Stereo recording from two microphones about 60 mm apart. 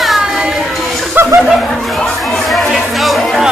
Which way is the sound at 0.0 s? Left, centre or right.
Centre.